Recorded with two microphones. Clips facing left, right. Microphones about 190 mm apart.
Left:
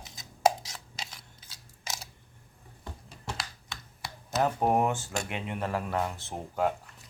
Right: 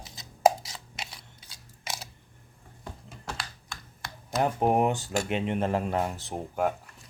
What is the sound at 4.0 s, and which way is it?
Computer keyboard, 5° left (ahead or behind).